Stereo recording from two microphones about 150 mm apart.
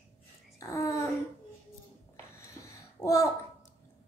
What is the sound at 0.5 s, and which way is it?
Babbling, 20° left (ahead or behind).